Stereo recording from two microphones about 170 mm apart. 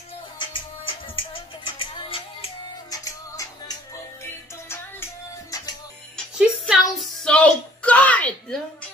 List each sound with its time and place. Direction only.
0.4 s music: 30° left (ahead or behind)
2.9 s music: 20° left (ahead or behind)
6.1 s music: centre (ahead or behind)
7.0 s a sound: 5° left (ahead or behind)